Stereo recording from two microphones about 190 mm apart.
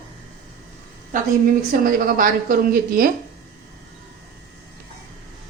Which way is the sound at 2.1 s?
50° right (ahead or behind).